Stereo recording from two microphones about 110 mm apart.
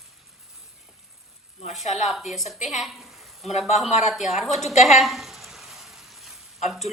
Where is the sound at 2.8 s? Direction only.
Centre (ahead or behind).